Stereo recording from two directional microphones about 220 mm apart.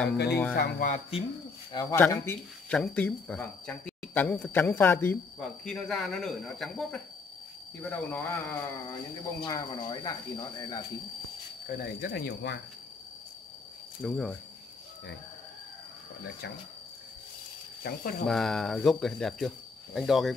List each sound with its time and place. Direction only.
0.3 s speech: 5° left (ahead or behind)
0.6 s speech: 35° left (ahead or behind)
1.7 s speech: 15° left (ahead or behind)
11.6 s speech: 40° left (ahead or behind)
14.0 s speech: centre (ahead or behind)
17.8 s speech: 40° left (ahead or behind)
18.2 s speech: centre (ahead or behind)